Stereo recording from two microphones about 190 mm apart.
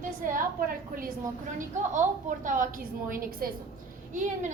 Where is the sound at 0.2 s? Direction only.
45° right (ahead or behind).